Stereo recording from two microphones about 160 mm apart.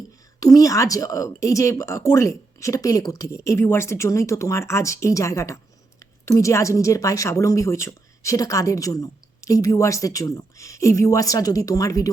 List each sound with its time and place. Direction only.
0.3 s a woman's voice: 20° left (ahead or behind)